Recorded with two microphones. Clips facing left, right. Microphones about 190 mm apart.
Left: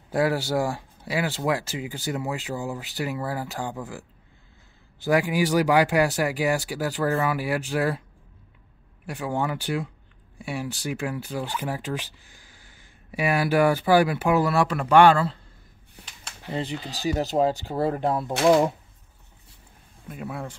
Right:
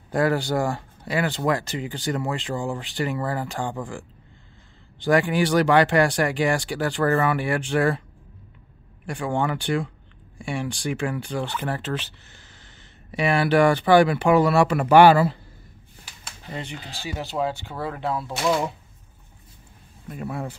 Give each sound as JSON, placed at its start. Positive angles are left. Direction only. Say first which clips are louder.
{"t": 0.1, "sound": "speech", "louder": "right 1 dB", "side_deg": 5}
{"t": 9.0, "sound": "speech", "louder": "right 2 dB", "side_deg": 5}
{"t": 16.4, "sound": "speech", "louder": "left 5 dB", "side_deg": 35}
{"t": 20.1, "sound": "speech", "louder": "right 3 dB", "side_deg": 0}